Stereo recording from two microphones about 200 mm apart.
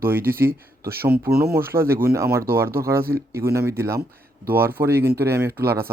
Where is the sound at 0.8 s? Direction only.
10° right (ahead or behind).